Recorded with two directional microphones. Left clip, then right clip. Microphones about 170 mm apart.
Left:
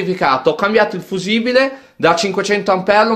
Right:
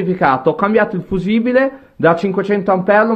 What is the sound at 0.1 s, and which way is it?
Speech, 25° left (ahead or behind).